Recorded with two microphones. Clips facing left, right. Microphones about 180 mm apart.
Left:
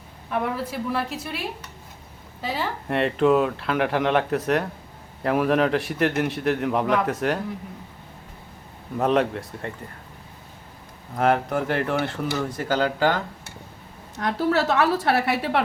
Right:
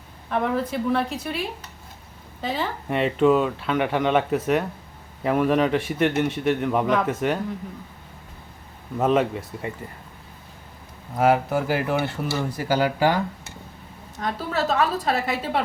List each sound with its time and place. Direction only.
0.3 s speech: 5° left (ahead or behind)
2.4 s speech: centre (ahead or behind)
9.0 s speech: centre (ahead or behind)
11.2 s speech: 5° right (ahead or behind)
14.2 s a woman's voice: 80° left